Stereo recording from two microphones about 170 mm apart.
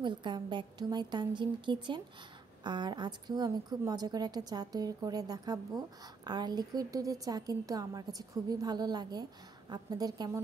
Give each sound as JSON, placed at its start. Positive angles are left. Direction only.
{"t": 0.0, "sound": "a woman's voice", "side_deg": -25}